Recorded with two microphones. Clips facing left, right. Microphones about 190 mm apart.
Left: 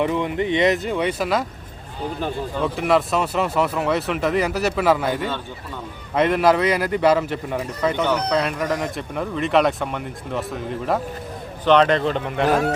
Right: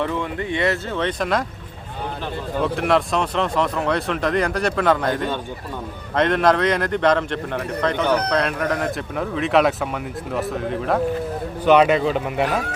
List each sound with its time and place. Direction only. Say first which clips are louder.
0.0 s speech: left 3 dB; 20° left (ahead or behind)
2.7 s a man's voice: left 1 dB; centre (ahead or behind)